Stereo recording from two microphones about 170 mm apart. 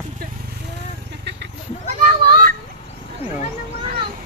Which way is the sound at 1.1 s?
90° right.